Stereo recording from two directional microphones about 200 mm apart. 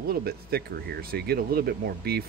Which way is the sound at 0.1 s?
50° right (ahead or behind).